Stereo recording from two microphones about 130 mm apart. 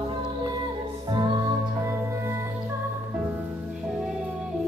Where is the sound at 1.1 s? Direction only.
35° right (ahead or behind).